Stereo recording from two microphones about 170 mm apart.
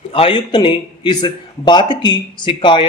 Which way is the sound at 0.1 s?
35° left (ahead or behind).